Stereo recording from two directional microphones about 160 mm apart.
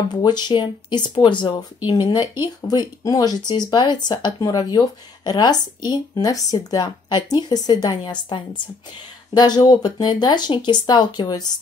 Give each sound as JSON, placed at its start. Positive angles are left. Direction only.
{"t": 0.1, "sound": "speech", "side_deg": 25}